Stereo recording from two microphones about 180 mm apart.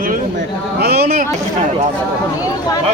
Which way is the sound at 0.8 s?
60° right (ahead or behind).